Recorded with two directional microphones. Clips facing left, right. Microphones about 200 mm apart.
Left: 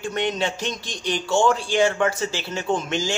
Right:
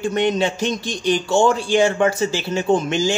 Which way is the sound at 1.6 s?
10° right (ahead or behind).